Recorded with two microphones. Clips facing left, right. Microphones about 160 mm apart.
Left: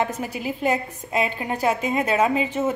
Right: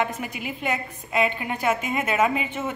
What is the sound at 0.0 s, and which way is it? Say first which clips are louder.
A woman's voice: left 2 dB; 35° left (ahead or behind).